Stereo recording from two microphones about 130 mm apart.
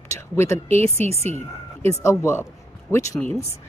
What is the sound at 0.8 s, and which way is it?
Speech, 55° right (ahead or behind).